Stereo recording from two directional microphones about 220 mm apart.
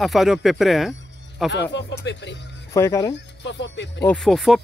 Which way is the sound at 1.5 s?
50° left (ahead or behind).